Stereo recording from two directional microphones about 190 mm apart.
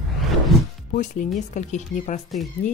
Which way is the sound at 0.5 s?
Centre (ahead or behind).